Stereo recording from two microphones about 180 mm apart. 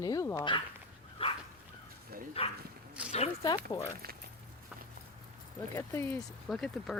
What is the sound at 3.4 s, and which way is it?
Speech, 20° left (ahead or behind).